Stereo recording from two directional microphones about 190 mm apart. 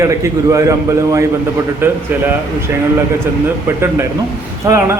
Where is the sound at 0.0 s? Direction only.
15° right (ahead or behind).